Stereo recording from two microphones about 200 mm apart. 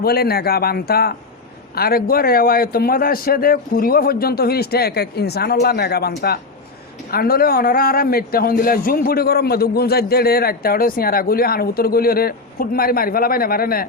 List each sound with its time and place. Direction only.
0.0 s a man's voice: 50° left (ahead or behind)